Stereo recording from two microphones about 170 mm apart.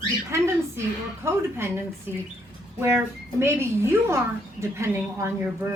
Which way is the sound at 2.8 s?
15° right (ahead or behind).